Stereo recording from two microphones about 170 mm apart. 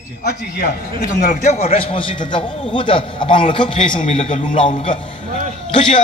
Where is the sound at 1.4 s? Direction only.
40° left (ahead or behind).